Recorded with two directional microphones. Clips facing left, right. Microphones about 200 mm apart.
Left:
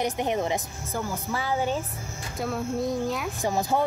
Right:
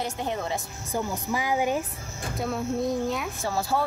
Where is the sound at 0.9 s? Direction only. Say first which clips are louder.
Right 2 dB; 15° right (ahead or behind).